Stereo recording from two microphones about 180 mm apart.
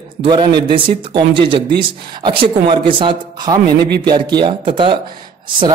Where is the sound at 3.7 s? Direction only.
65° right (ahead or behind).